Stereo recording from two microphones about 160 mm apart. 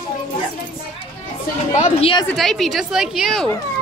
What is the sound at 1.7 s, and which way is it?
Speech, 40° left (ahead or behind).